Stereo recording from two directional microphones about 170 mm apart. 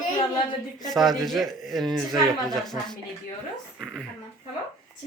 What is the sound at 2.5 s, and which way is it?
Speech, 25° left (ahead or behind).